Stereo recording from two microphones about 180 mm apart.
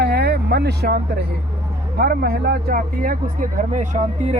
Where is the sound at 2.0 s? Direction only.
60° right (ahead or behind).